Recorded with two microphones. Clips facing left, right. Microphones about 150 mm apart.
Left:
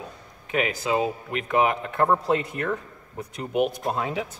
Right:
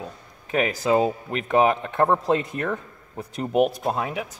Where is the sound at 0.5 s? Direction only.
35° right (ahead or behind).